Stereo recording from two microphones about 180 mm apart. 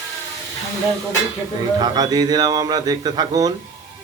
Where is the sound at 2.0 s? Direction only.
20° right (ahead or behind).